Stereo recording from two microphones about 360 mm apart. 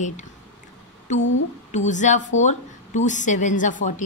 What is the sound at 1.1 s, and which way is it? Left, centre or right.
A woman's voice, centre.